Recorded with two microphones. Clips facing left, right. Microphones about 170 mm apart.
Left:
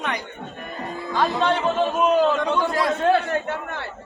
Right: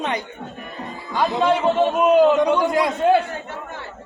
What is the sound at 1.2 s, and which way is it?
A man's voice, 5° right (ahead or behind).